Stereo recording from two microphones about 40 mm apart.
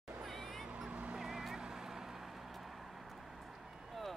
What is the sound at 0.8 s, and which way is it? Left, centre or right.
Vehicle, right.